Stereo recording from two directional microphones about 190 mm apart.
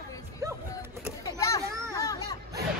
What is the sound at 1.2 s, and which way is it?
Children playing, 20° left (ahead or behind).